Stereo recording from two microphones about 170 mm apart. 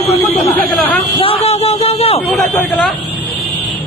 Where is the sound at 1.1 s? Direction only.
35° left (ahead or behind).